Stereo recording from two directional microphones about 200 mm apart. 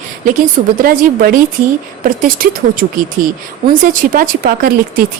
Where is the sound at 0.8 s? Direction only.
45° right (ahead or behind).